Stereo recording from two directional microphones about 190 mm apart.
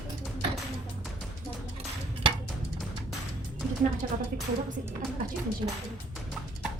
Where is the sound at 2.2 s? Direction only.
30° right (ahead or behind).